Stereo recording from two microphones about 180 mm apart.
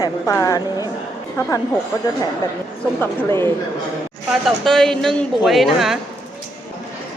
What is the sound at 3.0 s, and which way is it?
Speech, 15° left (ahead or behind).